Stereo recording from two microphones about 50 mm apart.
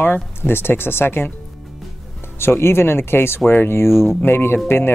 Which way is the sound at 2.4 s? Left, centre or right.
Left.